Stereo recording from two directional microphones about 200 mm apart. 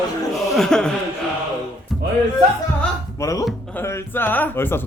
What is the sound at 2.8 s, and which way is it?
Music, 15° left (ahead or behind).